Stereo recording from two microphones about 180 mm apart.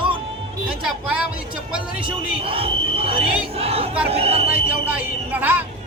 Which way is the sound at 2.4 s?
30° right (ahead or behind).